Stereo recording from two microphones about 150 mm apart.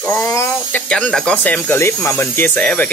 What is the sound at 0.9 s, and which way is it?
Speech, 5° left (ahead or behind).